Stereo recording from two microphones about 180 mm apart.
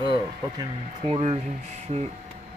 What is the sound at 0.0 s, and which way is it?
Speech, 25° right (ahead or behind).